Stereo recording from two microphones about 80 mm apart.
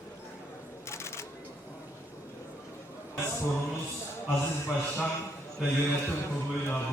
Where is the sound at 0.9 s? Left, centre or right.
Left.